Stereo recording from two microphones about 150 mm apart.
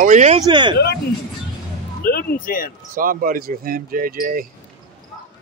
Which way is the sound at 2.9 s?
70° right (ahead or behind).